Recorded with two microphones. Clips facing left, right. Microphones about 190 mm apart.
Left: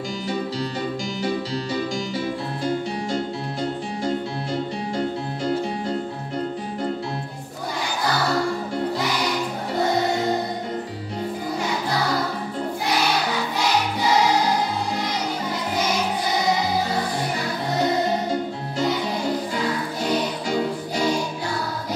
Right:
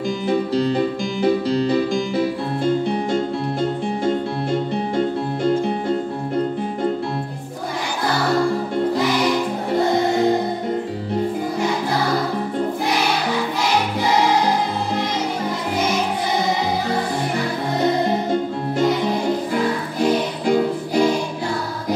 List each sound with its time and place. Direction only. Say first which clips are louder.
0.3 s music: right 9 dB; 55° right (ahead or behind)
20.4 s music: right 6 dB; 55° right (ahead or behind)